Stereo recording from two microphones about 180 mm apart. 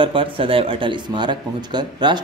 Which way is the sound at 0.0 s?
30° right (ahead or behind).